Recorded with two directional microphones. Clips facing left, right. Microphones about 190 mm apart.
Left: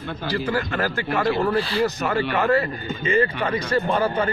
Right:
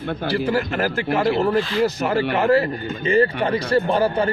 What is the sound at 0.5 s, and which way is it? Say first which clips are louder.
A man's voice: right 1 dB; 25° right (ahead or behind).